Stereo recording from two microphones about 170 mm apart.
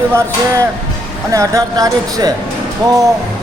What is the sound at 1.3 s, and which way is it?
Speech, 20° right (ahead or behind).